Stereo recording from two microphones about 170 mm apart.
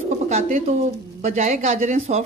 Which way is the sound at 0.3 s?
40° right (ahead or behind).